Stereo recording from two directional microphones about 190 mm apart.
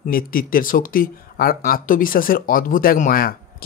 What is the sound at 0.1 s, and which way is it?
Speech, 50° left (ahead or behind).